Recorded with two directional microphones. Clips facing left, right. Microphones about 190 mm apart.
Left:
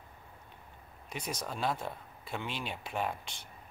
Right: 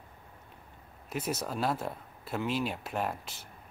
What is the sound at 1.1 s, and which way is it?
Speech, 5° right (ahead or behind).